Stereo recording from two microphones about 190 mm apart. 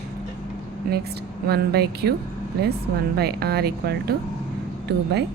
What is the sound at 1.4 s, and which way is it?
Speech, 55° right (ahead or behind).